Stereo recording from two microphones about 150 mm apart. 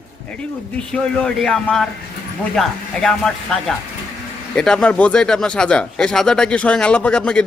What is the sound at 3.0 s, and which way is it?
A man's voice, 5° left (ahead or behind).